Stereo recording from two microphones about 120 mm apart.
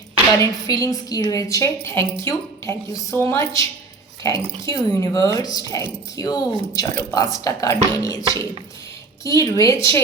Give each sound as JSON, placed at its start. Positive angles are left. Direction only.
{"t": 0.3, "sound": "a woman's voice", "side_deg": 30}